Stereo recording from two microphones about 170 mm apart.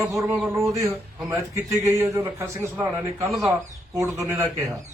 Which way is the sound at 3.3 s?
Centre (ahead or behind).